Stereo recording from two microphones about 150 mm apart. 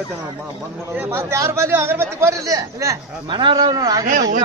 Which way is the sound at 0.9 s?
15° right (ahead or behind).